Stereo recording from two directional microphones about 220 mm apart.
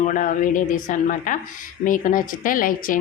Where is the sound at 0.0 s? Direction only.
35° left (ahead or behind).